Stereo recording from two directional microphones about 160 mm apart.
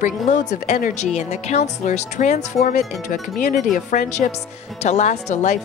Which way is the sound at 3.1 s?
60° left (ahead or behind).